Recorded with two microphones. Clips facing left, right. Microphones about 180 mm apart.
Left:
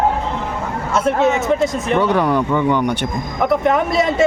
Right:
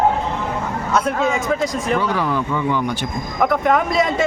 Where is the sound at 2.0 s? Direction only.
60° left (ahead or behind).